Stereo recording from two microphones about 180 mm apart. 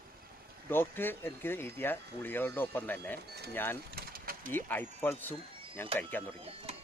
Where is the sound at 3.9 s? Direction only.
55° right (ahead or behind).